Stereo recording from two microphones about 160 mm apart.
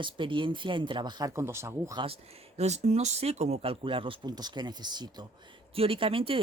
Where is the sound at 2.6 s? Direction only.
45° right (ahead or behind); by 5.2 s 25° right (ahead or behind).